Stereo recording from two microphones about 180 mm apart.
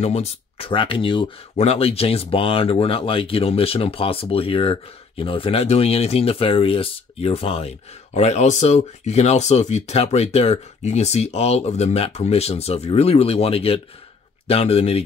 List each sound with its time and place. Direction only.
0.0 s speech: 35° left (ahead or behind)